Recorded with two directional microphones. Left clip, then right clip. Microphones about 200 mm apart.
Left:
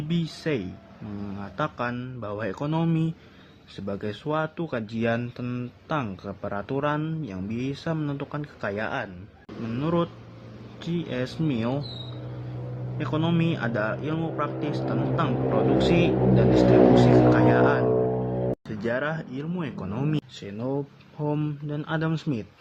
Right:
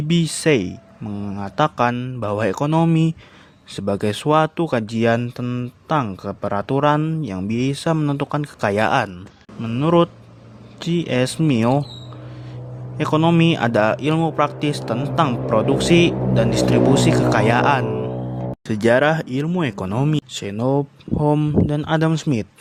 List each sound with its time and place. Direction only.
0.1 s speech: 50° right (ahead or behind)
9.6 s speech: 45° right (ahead or behind)
13.0 s speech: 50° right (ahead or behind)